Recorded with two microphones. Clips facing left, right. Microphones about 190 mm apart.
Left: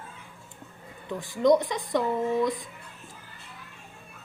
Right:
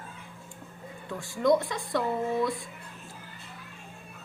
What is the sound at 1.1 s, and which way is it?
Speech, 20° left (ahead or behind).